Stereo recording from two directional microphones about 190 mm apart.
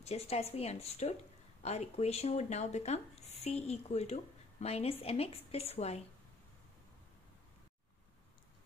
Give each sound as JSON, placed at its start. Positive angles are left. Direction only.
{"t": 0.0, "sound": "speech", "side_deg": 35}